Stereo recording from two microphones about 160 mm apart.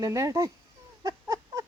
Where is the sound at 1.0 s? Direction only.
20° right (ahead or behind).